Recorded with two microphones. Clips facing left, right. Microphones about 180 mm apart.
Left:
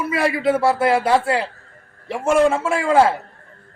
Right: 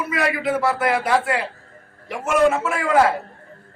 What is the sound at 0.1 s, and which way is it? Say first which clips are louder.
A man's voice: left 4 dB; 30° left (ahead or behind).